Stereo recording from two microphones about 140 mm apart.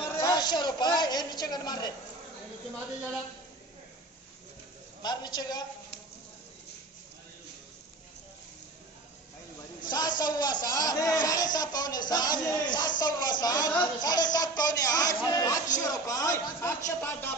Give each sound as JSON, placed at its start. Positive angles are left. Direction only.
{"t": 0.2, "sound": "a sound", "side_deg": 30}
{"t": 5.0, "sound": "speech", "side_deg": 30}
{"t": 9.8, "sound": "speech", "side_deg": 30}